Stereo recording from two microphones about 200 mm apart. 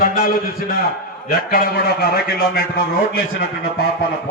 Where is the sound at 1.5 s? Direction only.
50° left (ahead or behind).